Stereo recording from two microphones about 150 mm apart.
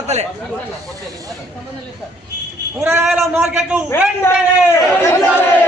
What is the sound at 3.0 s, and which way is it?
Speech, 5° right (ahead or behind).